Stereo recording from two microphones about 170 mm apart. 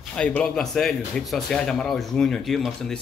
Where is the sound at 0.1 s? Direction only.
5° left (ahead or behind).